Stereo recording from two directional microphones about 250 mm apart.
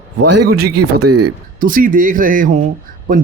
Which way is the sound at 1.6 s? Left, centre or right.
Right.